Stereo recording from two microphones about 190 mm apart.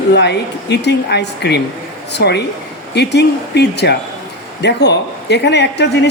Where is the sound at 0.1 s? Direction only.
65° left (ahead or behind).